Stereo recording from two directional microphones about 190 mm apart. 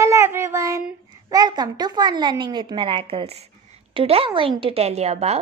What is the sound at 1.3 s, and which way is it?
A woman's voice, 20° right (ahead or behind).